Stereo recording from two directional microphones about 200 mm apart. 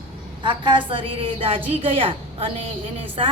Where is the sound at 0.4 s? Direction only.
25° right (ahead or behind).